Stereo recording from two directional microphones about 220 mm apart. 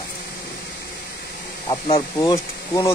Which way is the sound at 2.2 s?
15° left (ahead or behind).